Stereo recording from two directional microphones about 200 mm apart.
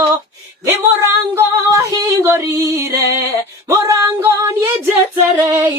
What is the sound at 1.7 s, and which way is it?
Female singing, 15° right (ahead or behind).